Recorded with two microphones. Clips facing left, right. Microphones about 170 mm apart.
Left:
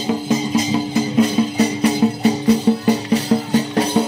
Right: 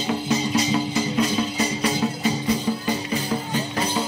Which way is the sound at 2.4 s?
75° left (ahead or behind).